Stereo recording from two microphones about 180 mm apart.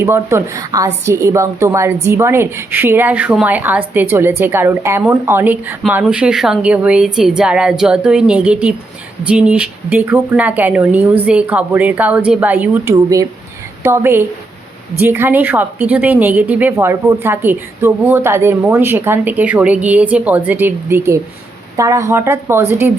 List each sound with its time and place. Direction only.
0.0 s a woman's voice: 15° right (ahead or behind)